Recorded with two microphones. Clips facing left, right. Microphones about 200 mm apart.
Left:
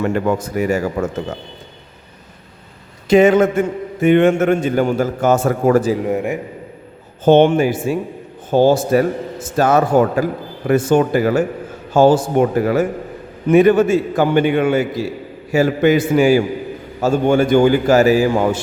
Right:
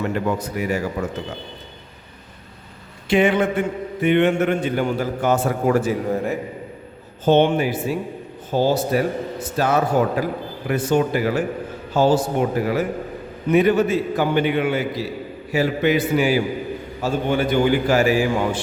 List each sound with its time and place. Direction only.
0.0 s a man's voice: 50° left (ahead or behind)
3.1 s a man's voice: 40° left (ahead or behind)
6.1 s a man's voice: 15° left (ahead or behind)
7.3 s a man's voice: 50° left (ahead or behind)